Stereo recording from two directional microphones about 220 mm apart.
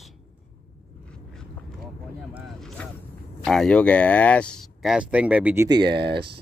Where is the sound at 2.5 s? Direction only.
Centre (ahead or behind).